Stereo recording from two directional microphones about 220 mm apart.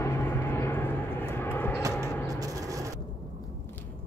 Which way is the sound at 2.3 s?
15° right (ahead or behind).